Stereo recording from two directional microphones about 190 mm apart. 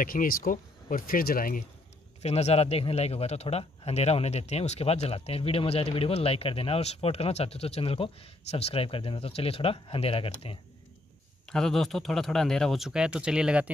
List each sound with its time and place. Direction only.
0.0 s speech: 45° left (ahead or behind)
2.2 s a man's voice: 35° left (ahead or behind)
11.4 s speech: centre (ahead or behind)